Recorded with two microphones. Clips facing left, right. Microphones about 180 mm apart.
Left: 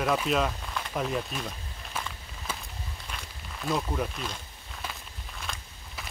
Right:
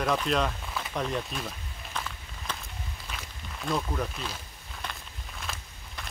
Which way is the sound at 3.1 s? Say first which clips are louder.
Right 1 dB; centre (ahead or behind).